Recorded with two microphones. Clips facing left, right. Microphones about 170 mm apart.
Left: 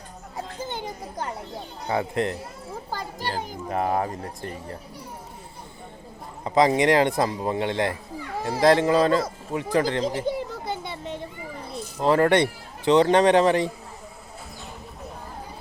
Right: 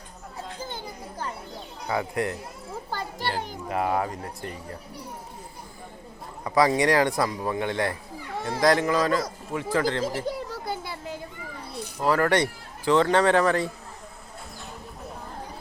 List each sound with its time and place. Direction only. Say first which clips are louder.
0.6 s music: left 6 dB; 20° left (ahead or behind)
1.9 s speech: left 2 dB; 25° left (ahead or behind)
3.2 s a child's voice: even; 45° left (ahead or behind)
3.8 s speech: left 1 dB; 30° left (ahead or behind)
6.4 s a man's voice: left 2 dB; 25° left (ahead or behind)
10.7 s a sound: left 1 dB; 20° left (ahead or behind)
11.0 s children playing: left 3 dB; 5° right (ahead or behind)
11.9 s speech: left 3 dB; 25° left (ahead or behind)